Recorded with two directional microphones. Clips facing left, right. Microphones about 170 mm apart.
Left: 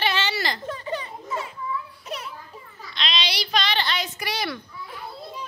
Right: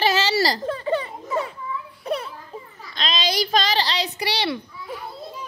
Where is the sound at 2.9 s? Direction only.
45° right (ahead or behind).